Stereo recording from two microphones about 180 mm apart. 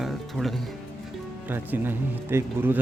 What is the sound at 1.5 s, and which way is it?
Speech, 10° right (ahead or behind).